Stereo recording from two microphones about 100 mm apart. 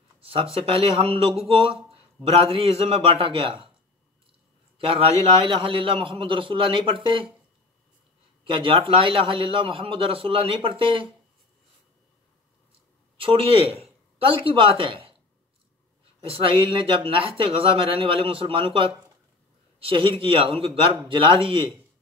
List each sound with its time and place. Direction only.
0.2 s speech: 75° right (ahead or behind)
1.5 s speech: 65° right (ahead or behind)
4.7 s a man's voice: 70° right (ahead or behind)
8.5 s a man's voice: 60° right (ahead or behind)
13.2 s speech: 65° right (ahead or behind); by 13.8 s 80° right
14.1 s speech: 65° right (ahead or behind)
16.3 s a man's voice: 70° right (ahead or behind)